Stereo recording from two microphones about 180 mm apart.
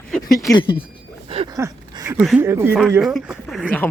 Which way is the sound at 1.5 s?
15° right (ahead or behind).